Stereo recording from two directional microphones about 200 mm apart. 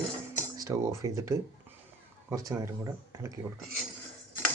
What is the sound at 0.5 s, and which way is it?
Speech, 15° right (ahead or behind).